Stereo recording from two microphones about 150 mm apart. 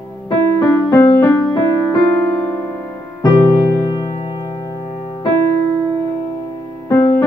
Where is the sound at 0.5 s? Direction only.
20° left (ahead or behind).